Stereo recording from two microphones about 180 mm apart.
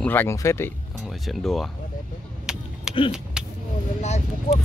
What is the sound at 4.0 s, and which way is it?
Speech, 40° left (ahead or behind).